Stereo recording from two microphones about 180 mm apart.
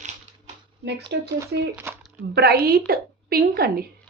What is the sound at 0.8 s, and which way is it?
Speech, 70° right (ahead or behind).